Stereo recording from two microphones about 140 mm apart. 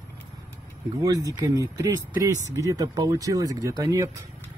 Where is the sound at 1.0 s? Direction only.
25° right (ahead or behind).